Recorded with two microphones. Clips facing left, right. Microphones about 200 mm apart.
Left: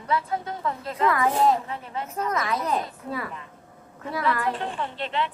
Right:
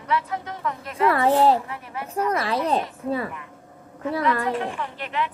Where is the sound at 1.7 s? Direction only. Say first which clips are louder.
Left 1 dB; 25° left (ahead or behind).